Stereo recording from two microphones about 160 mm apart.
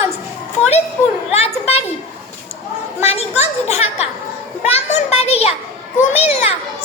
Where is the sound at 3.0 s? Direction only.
40° left (ahead or behind).